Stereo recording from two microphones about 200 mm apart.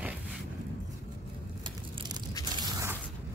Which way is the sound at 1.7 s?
20° right (ahead or behind).